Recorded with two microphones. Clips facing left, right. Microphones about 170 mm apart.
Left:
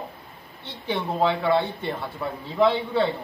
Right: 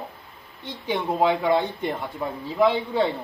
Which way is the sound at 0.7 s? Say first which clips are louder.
Right 2 dB; 15° right (ahead or behind).